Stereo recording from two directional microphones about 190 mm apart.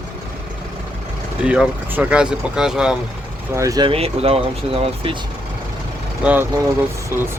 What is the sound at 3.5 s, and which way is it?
Speech, 20° right (ahead or behind).